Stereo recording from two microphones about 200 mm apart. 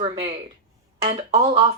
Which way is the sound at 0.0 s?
25° right (ahead or behind).